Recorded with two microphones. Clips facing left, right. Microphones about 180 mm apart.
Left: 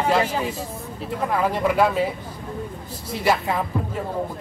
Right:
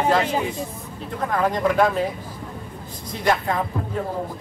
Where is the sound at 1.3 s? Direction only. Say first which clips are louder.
Right 1 dB; 5° left (ahead or behind).